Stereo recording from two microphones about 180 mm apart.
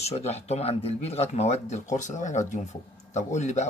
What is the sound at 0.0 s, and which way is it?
Speech, 35° left (ahead or behind).